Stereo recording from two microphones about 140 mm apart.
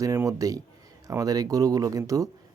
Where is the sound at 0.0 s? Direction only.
20° right (ahead or behind).